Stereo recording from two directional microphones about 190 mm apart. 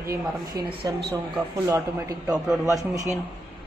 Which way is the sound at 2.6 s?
15° right (ahead or behind).